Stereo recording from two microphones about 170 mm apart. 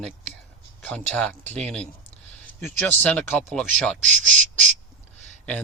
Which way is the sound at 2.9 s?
10° left (ahead or behind).